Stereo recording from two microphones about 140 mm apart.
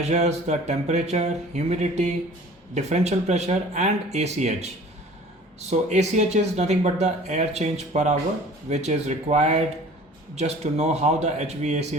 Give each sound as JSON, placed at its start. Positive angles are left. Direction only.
{"t": 0.0, "sound": "speech", "side_deg": -55}